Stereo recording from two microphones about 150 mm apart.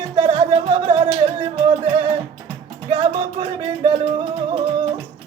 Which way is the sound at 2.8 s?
35° right (ahead or behind).